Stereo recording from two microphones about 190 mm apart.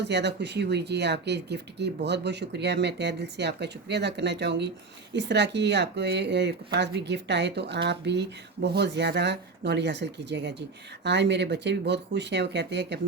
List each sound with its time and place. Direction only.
0.0 s speech: 65° right (ahead or behind)